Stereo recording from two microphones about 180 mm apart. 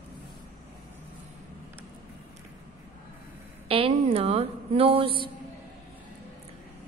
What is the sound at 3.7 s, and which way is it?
A woman's voice, 30° right (ahead or behind).